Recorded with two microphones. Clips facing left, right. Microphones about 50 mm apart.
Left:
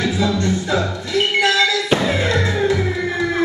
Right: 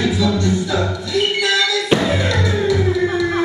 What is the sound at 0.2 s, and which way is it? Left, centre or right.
Music, left.